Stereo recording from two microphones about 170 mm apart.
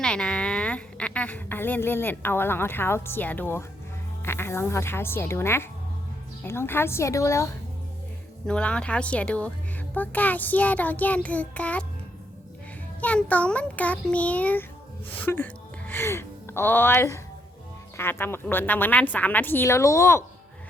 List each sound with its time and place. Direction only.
0.0 s a woman's voice: 5° left (ahead or behind)
8.4 s a woman's voice: 5° left (ahead or behind)
13.0 s a woman's voice: 10° left (ahead or behind)